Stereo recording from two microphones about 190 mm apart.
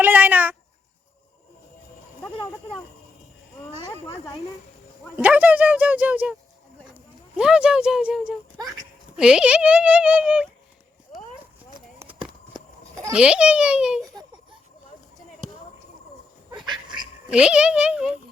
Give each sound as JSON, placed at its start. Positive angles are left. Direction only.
{"t": 0.0, "sound": "a sound", "side_deg": -10}
{"t": 5.1, "sound": "speech", "side_deg": -10}
{"t": 12.2, "sound": "a sound", "side_deg": -20}
{"t": 13.1, "sound": "speech", "side_deg": -5}
{"t": 16.6, "sound": "duck", "side_deg": -25}
{"t": 17.2, "sound": "speech", "side_deg": -5}